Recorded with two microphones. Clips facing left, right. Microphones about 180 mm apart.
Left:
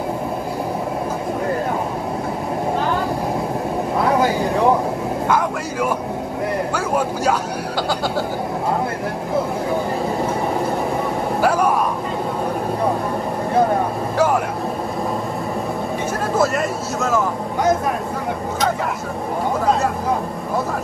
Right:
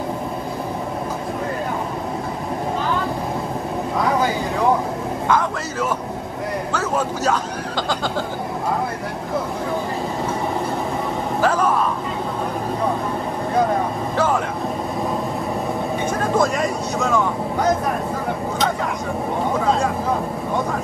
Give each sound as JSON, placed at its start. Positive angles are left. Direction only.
{"t": 6.7, "sound": "a sound", "side_deg": 10}
{"t": 11.4, "sound": "vehicle", "side_deg": 10}
{"t": 14.1, "sound": "vehicle", "side_deg": 10}
{"t": 16.2, "sound": "vehicle", "side_deg": 5}